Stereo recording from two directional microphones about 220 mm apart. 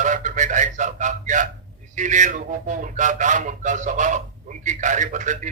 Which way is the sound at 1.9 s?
35° right (ahead or behind).